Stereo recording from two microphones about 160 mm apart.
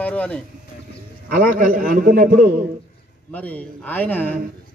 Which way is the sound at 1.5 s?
60° right (ahead or behind).